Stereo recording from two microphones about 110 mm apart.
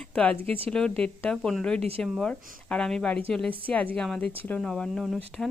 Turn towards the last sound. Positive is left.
turn(degrees=5)  # may be behind; listen again after turning